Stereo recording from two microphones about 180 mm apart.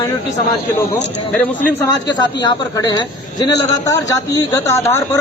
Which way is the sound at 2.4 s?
20° left (ahead or behind).